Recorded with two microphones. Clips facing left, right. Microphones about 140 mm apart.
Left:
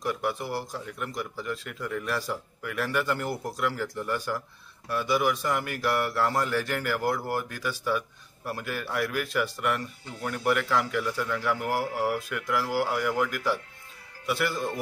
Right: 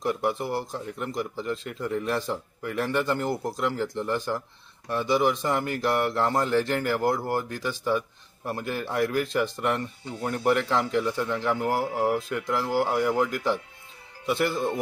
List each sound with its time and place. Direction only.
0.0 s speech: 25° right (ahead or behind)